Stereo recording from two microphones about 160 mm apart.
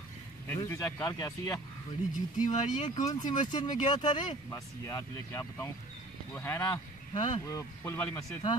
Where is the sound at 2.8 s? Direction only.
25° left (ahead or behind).